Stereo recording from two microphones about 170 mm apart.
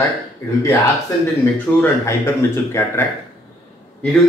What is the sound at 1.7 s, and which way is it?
Speech, 15° left (ahead or behind).